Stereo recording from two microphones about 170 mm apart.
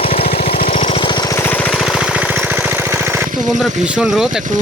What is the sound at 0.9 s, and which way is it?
Jackhammer, 30° left (ahead or behind).